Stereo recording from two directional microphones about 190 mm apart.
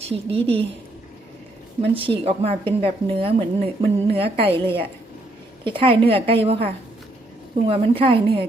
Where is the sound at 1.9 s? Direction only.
30° right (ahead or behind).